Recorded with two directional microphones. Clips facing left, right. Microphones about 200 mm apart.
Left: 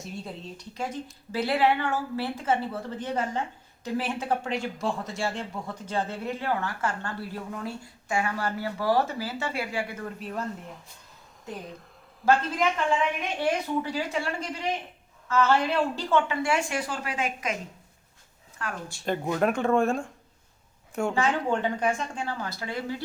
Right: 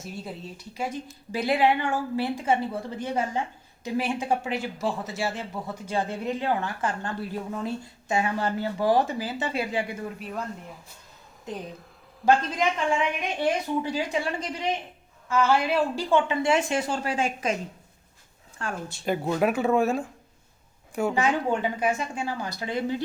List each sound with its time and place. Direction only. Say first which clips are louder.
0.0 s a man's voice: right 1 dB; 5° right (ahead or behind)
10.2 s speech: left 1 dB; centre (ahead or behind)
12.2 s a man's voice: right 1 dB; 15° right (ahead or behind)
18.6 s a woman's voice: right 2 dB; 20° right (ahead or behind)
19.0 s a man's voice: right 1 dB; 5° right (ahead or behind)